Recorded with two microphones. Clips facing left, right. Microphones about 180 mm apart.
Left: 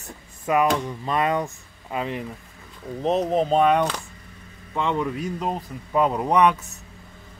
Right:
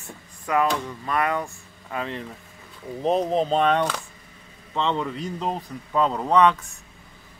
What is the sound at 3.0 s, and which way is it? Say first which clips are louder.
Speech: even; 5° left (ahead or behind).